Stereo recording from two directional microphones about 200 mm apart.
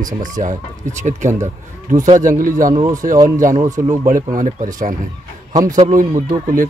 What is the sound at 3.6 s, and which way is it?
Speech, 15° right (ahead or behind).